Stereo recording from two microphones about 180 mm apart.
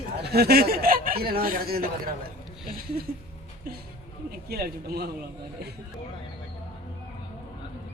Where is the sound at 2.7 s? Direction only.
55° right (ahead or behind).